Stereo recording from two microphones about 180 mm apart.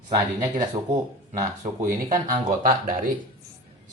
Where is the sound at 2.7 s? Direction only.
50° right (ahead or behind).